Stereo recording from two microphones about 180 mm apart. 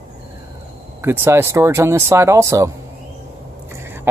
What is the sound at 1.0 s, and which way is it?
Speech, 15° right (ahead or behind).